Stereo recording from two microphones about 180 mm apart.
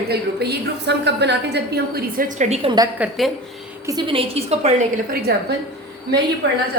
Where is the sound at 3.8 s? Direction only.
25° right (ahead or behind).